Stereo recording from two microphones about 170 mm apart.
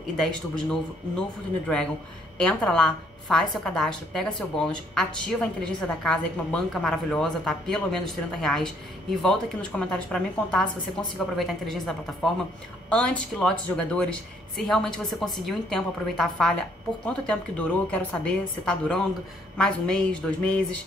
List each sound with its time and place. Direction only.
0.2 s a woman's voice: 5° left (ahead or behind)
2.3 s a woman's voice: 5° left (ahead or behind)